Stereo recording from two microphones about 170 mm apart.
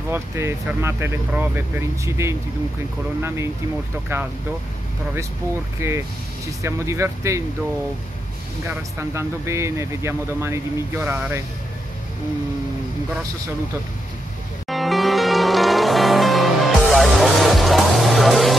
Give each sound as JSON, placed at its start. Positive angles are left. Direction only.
{"t": 0.1, "sound": "speech", "side_deg": -15}
{"t": 5.8, "sound": "speech", "side_deg": -15}
{"t": 8.6, "sound": "speech", "side_deg": -15}
{"t": 14.7, "sound": "music", "side_deg": 0}